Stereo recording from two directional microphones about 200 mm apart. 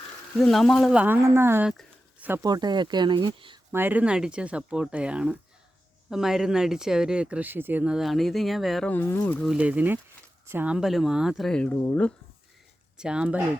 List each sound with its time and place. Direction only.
0.3 s speech: centre (ahead or behind)
1.7 s a sound: 10° right (ahead or behind)
2.4 s speech: 20° right (ahead or behind)
3.7 s speech: 10° right (ahead or behind); by 9.5 s 10° left (ahead or behind)
9.5 s speech: 5° right (ahead or behind); by 12.1 s 10° left (ahead or behind)
13.0 s speech: 5° right (ahead or behind)